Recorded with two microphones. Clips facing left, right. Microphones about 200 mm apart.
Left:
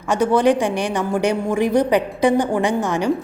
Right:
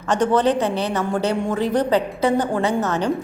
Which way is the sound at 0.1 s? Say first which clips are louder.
Left 2 dB; 10° left (ahead or behind).